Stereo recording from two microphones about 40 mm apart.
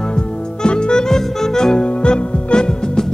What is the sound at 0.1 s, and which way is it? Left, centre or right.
Music, left.